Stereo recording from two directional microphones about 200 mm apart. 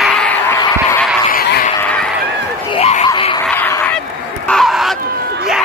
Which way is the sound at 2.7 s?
30° left (ahead or behind).